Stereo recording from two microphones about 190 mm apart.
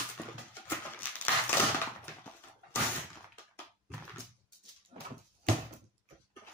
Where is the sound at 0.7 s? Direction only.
10° left (ahead or behind).